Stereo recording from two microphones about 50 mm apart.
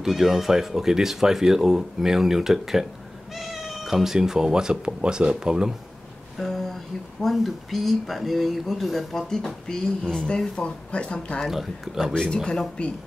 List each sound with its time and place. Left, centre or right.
0.0 s speech: centre
6.3 s a sound: centre
7.3 s speech: centre
11.5 s speech: centre
12.1 s speech: centre